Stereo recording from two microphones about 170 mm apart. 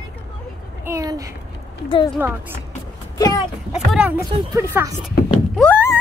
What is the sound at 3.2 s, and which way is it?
Speech, 20° left (ahead or behind).